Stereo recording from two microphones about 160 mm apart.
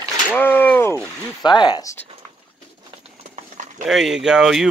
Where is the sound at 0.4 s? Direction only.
10° left (ahead or behind).